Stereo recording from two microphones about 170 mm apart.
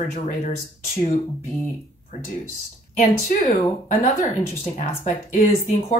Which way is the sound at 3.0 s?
50° left (ahead or behind).